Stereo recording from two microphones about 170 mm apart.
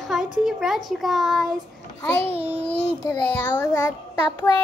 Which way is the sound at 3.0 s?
15° left (ahead or behind).